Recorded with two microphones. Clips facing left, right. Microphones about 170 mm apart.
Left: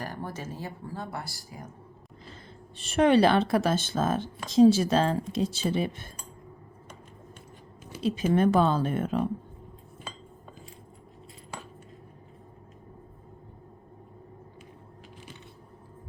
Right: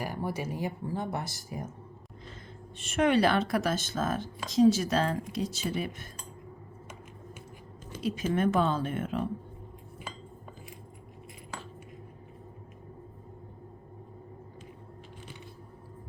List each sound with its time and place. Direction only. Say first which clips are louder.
0.0 s speech: right 3 dB; 10° right (ahead or behind)
2.7 s speech: left 4 dB; 35° left (ahead or behind)
8.0 s speech: left 4 dB; 30° left (ahead or behind)